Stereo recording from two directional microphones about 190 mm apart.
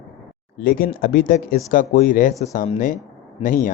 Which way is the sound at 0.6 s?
50° left (ahead or behind).